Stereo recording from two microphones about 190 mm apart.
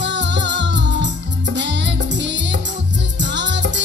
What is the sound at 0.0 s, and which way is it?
Music, 70° right (ahead or behind).